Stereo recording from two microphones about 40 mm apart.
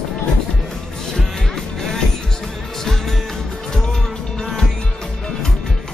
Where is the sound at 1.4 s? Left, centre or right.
Centre.